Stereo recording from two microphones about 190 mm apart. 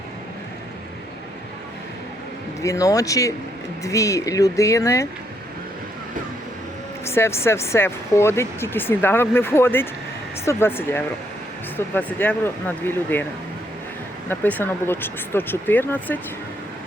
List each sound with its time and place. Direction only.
2.6 s speech: 15° left (ahead or behind)
7.0 s speech: 15° left (ahead or behind)
14.3 s speech: 10° left (ahead or behind)